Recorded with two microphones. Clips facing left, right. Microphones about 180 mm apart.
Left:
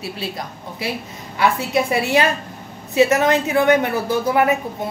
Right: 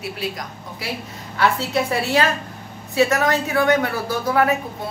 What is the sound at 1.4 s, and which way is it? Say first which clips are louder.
A woman's voice: left 2 dB; 15° left (ahead or behind).